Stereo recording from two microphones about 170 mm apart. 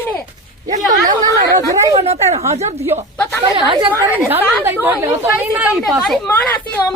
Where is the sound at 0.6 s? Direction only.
45° right (ahead or behind).